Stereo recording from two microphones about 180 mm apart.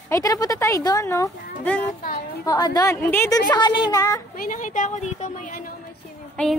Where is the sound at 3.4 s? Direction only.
25° left (ahead or behind).